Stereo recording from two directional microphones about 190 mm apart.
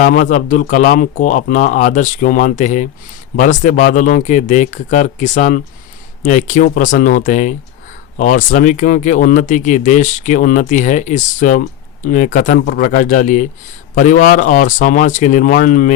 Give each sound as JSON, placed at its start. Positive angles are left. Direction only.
{"t": 0.0, "sound": "a man's voice", "side_deg": 45}